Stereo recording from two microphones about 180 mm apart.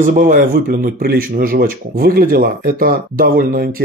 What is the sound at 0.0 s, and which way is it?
Speech, 50° right (ahead or behind).